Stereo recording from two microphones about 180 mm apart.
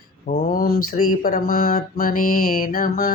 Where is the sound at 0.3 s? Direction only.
50° left (ahead or behind).